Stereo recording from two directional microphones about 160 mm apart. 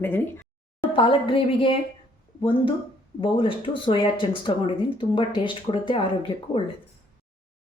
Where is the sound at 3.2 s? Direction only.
30° left (ahead or behind).